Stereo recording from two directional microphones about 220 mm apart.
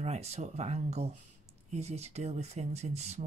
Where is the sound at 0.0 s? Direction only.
30° right (ahead or behind).